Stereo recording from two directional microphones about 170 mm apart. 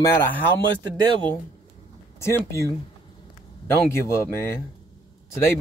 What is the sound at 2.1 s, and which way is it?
Speech, 15° left (ahead or behind).